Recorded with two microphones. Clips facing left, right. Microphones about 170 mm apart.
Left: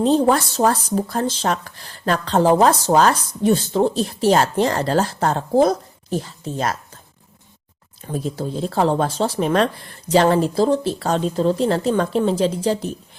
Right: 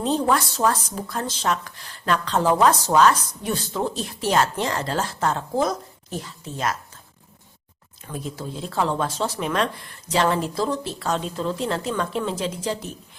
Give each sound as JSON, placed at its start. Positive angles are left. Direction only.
{"t": 0.0, "sound": "speech", "side_deg": 30}
{"t": 8.0, "sound": "speech", "side_deg": 35}